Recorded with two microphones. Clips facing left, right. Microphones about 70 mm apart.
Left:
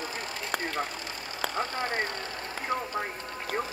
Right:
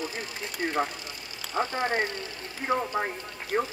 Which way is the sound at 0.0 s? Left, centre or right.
Left.